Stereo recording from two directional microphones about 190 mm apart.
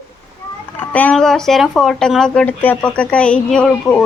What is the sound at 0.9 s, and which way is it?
Speech, 5° left (ahead or behind).